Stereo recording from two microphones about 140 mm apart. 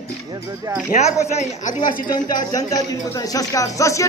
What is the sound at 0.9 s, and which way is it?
Speech, 55° left (ahead or behind).